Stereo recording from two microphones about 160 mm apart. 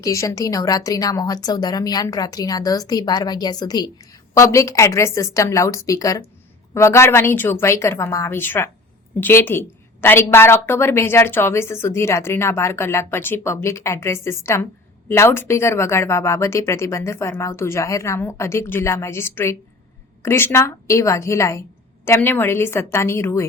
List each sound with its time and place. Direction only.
0.0 s a woman's voice: 20° left (ahead or behind)